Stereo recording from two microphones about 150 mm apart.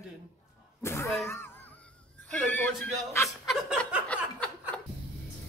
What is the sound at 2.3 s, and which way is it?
Speech, 10° left (ahead or behind).